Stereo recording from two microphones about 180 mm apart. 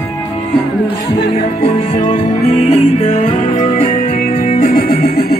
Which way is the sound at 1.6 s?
40° left (ahead or behind).